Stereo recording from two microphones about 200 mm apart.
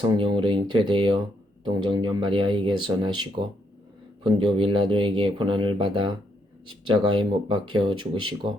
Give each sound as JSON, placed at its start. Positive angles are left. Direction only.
{"t": 0.0, "sound": "speech", "side_deg": -25}
{"t": 4.2, "sound": "speech", "side_deg": -25}